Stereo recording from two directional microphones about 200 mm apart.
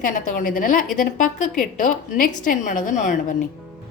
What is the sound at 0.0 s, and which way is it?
A woman's voice, 45° left (ahead or behind).